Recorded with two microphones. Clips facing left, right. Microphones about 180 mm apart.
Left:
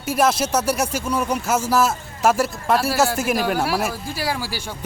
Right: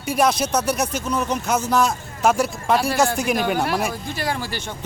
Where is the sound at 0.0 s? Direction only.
5° left (ahead or behind).